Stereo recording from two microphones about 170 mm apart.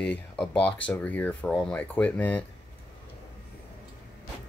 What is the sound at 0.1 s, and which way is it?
Speech, 10° left (ahead or behind).